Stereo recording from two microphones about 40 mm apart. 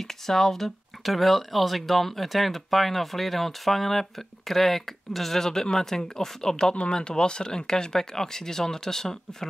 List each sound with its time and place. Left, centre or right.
0.1 s speech: centre
6.7 s speech: left